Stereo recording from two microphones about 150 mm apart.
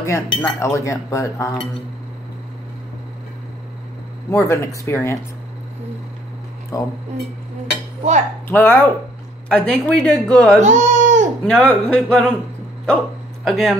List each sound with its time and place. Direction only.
0.0 s speech: 20° left (ahead or behind)
4.3 s speech: 20° left (ahead or behind)
6.7 s speech: 20° left (ahead or behind)
8.5 s speech: 10° left (ahead or behind)
10.6 s baby cry: 50° right (ahead or behind)
11.4 s speech: 10° left (ahead or behind)
12.8 s bow-wow: 5° left (ahead or behind)